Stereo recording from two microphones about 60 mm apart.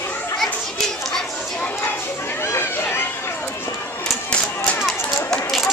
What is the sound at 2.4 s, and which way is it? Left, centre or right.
Chatter, left.